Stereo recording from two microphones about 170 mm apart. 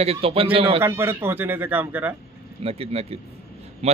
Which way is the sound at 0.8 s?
15° right (ahead or behind).